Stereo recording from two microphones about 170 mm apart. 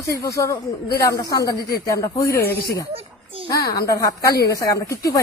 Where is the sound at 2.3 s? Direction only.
65° left (ahead or behind).